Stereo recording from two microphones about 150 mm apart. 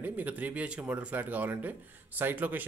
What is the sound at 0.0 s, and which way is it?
Speech, 10° right (ahead or behind).